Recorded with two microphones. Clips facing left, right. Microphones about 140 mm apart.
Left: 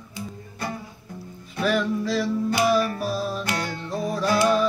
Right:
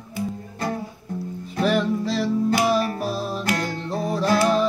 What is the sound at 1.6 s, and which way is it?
Music, 30° right (ahead or behind).